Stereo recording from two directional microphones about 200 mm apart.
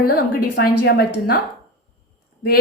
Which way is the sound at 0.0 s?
50° left (ahead or behind).